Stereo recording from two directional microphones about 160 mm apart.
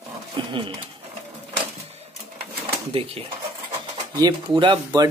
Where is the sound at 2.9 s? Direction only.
35° right (ahead or behind).